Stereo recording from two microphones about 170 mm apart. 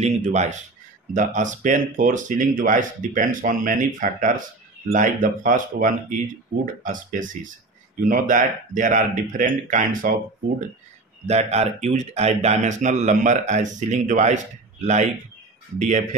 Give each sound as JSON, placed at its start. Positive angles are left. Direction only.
{"t": 0.0, "sound": "speech", "side_deg": -45}
{"t": 11.2, "sound": "speech", "side_deg": -40}
{"t": 15.8, "sound": "speech", "side_deg": -45}